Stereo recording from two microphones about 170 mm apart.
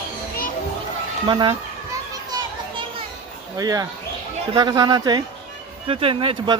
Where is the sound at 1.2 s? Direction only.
25° right (ahead or behind).